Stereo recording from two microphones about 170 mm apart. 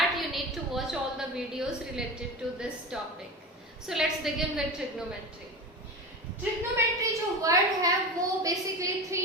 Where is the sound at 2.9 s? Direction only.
5° right (ahead or behind).